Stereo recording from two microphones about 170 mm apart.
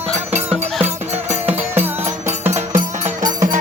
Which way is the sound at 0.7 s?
10° right (ahead or behind).